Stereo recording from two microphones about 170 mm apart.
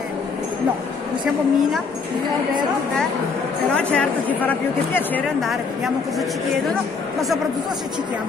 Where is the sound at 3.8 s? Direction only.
5° left (ahead or behind).